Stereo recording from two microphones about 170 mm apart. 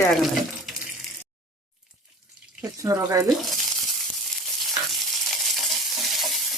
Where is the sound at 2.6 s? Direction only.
20° right (ahead or behind).